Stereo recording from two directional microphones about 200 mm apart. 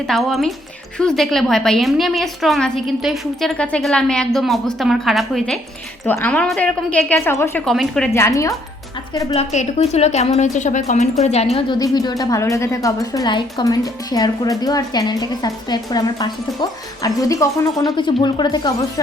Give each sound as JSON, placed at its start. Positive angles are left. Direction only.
{"t": 0.1, "sound": "a woman's voice", "side_deg": 0}
{"t": 8.1, "sound": "a woman's voice", "side_deg": 15}
{"t": 9.3, "sound": "a woman's voice", "side_deg": 35}
{"t": 11.5, "sound": "a woman's voice", "side_deg": 20}